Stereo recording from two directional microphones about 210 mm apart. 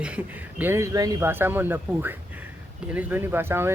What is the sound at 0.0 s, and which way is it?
Speech, 5° right (ahead or behind).